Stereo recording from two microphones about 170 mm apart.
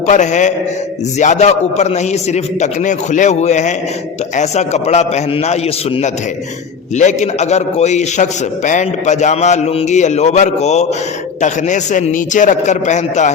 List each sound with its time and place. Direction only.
0.1 s a man's voice: 45° left (ahead or behind)